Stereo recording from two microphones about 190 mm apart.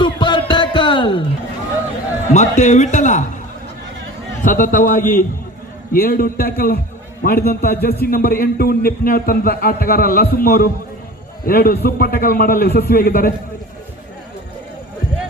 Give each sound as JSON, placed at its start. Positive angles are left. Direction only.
{"t": 0.0, "sound": "music", "side_deg": 25}
{"t": 2.3, "sound": "a man's voice", "side_deg": 40}
{"t": 4.4, "sound": "a man's voice", "side_deg": 45}